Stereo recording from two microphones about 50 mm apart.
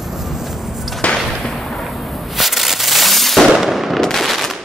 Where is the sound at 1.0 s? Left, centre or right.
Left.